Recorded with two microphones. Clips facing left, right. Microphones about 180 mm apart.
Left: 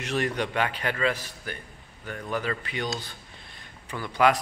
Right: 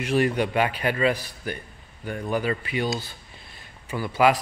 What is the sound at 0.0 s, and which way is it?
Speech, 10° right (ahead or behind).